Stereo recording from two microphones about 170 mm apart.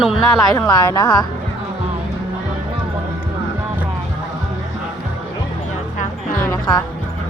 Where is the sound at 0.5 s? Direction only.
25° left (ahead or behind).